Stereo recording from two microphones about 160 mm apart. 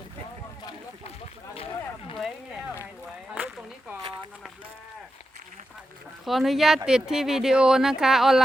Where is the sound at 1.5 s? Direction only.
40° left (ahead or behind).